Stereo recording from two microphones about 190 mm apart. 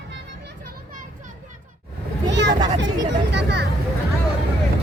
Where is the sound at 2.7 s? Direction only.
70° right (ahead or behind).